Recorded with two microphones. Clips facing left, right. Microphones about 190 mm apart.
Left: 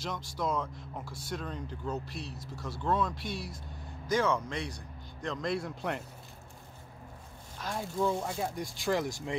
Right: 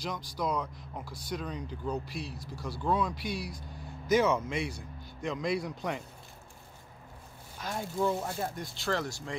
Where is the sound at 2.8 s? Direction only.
Centre (ahead or behind).